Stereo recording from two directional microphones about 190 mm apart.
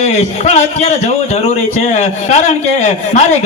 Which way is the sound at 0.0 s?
35° left (ahead or behind).